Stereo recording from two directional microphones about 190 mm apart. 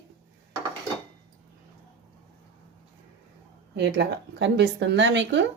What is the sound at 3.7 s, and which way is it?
Speech, 65° right (ahead or behind).